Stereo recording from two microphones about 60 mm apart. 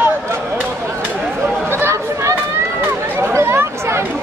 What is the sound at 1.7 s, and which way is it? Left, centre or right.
Chatter, right.